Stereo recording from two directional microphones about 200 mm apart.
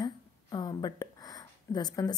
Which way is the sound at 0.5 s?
20° left (ahead or behind).